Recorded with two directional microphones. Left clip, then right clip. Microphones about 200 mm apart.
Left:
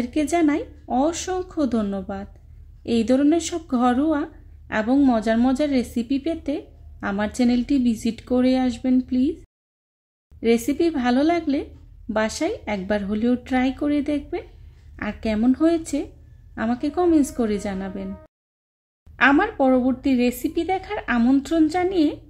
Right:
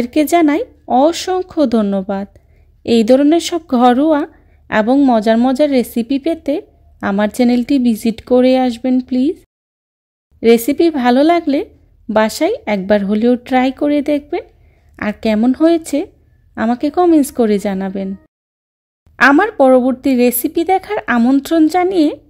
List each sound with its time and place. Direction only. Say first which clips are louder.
0.0 s speech: right 9 dB; 40° right (ahead or behind)
19.1 s speech: right 8 dB; 40° right (ahead or behind)